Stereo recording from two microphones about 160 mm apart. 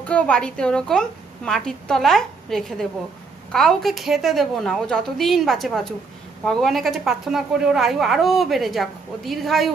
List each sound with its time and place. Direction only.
0.0 s a woman's voice: 5° left (ahead or behind)